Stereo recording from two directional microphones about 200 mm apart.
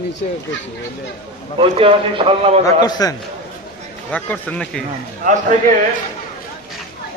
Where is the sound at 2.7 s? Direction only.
20° left (ahead or behind).